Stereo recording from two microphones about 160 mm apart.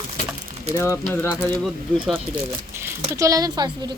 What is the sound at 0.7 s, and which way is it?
Speech, 15° left (ahead or behind).